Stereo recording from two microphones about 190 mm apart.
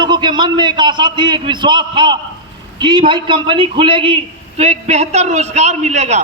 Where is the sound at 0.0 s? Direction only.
25° right (ahead or behind).